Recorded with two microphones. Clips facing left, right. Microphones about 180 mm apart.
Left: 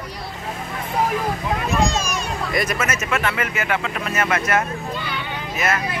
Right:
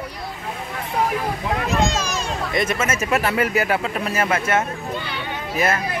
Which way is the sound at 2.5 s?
25° right (ahead or behind).